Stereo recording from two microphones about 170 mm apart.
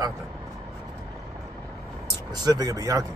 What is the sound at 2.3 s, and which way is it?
Speech, 20° right (ahead or behind).